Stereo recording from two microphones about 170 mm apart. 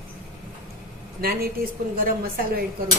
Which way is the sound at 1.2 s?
65° right (ahead or behind).